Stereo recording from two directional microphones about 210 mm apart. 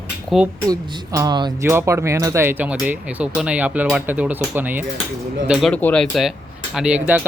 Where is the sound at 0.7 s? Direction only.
20° right (ahead or behind).